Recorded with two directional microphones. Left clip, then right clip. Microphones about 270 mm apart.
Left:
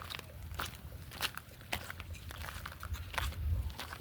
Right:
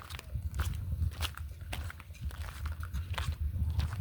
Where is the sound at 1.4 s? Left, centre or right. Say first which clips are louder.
Left 4 dB; centre.